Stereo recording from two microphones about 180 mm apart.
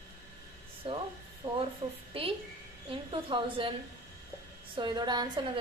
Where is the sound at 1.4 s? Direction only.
20° right (ahead or behind).